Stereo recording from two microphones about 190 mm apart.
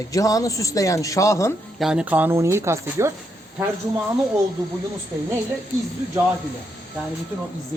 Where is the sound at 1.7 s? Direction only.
5° right (ahead or behind).